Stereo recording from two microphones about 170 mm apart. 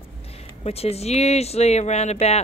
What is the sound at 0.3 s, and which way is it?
Speech, 35° left (ahead or behind).